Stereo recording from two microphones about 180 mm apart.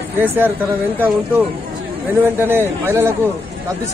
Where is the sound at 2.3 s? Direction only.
10° right (ahead or behind).